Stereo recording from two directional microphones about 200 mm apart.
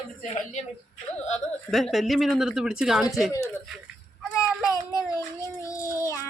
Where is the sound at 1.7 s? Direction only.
Centre (ahead or behind).